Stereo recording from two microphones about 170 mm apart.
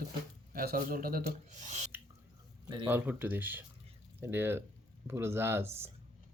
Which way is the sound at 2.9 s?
10° right (ahead or behind).